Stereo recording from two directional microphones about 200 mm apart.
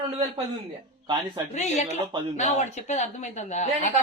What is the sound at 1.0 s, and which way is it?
Speech, 25° right (ahead or behind).